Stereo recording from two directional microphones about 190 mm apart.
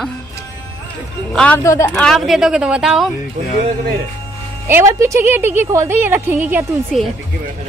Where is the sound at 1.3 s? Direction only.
5° left (ahead or behind).